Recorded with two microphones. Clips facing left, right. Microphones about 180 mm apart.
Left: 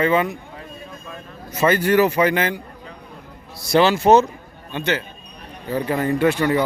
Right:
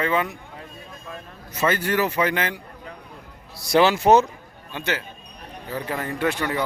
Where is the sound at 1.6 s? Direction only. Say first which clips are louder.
Left 6 dB; 10° left (ahead or behind).